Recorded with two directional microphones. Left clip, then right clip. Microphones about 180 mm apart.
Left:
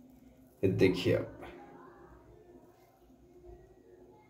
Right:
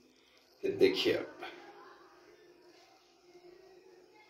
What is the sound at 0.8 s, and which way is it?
Speech, 5° left (ahead or behind).